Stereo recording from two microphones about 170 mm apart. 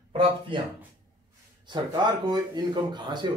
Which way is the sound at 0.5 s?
30° right (ahead or behind).